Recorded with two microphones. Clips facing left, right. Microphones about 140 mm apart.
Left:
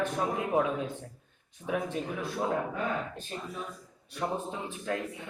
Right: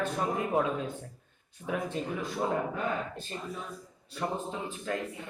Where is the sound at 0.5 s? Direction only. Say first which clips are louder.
Left 1 dB; 10° left (ahead or behind).